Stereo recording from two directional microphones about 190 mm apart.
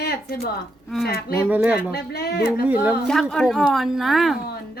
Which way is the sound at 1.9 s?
55° left (ahead or behind).